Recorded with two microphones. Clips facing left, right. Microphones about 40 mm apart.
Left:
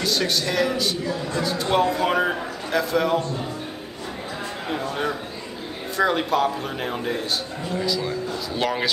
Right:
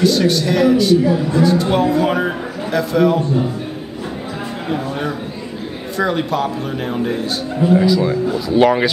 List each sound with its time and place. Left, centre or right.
0.0 s a man's voice: centre
4.6 s a man's voice: centre
7.8 s speech: centre